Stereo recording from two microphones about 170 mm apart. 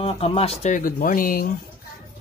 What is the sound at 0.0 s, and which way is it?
Speech, 35° left (ahead or behind).